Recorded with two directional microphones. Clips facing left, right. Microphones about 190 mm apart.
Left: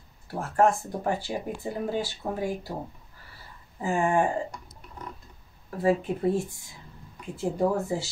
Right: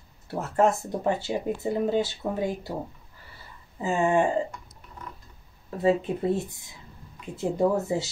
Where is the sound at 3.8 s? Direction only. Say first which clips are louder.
Right 1 dB; 25° right (ahead or behind).